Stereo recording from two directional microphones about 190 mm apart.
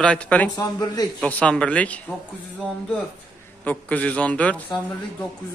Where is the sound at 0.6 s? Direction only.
20° left (ahead or behind).